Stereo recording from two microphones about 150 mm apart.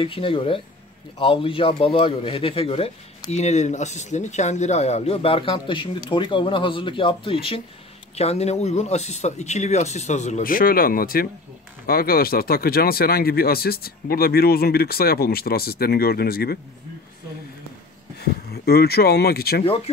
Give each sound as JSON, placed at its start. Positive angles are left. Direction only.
{"t": 0.0, "sound": "speech", "side_deg": 35}
{"t": 10.4, "sound": "speech", "side_deg": 75}
{"t": 11.8, "sound": "speech", "side_deg": 90}
{"t": 18.2, "sound": "speech", "side_deg": 90}